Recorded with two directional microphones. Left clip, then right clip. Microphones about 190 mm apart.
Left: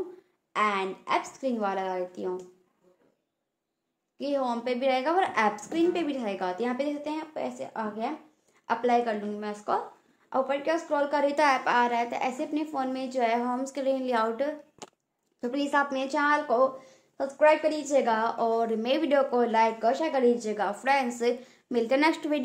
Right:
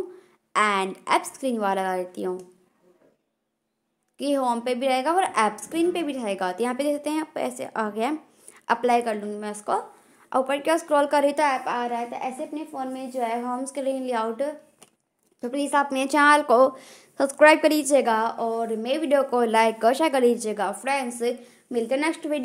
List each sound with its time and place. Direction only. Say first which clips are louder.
0.5 s a woman's voice: right 5 dB; 40° right (ahead or behind)
4.2 s a woman's voice: right 5 dB; 40° right (ahead or behind)
8.6 s speech: right 4 dB; 30° right (ahead or behind)
10.3 s a woman's voice: right 4 dB; 40° right (ahead or behind)
11.3 s a woman's voice: even; 15° right (ahead or behind)
16.0 s a woman's voice: right 7 dB; 45° right (ahead or behind)
18.0 s speech: right 3 dB; 25° right (ahead or behind)
18.4 s a woman's voice: even; 10° right (ahead or behind)
19.3 s a woman's voice: right 4 dB; 35° right (ahead or behind); by 22.4 s 10° right (ahead or behind)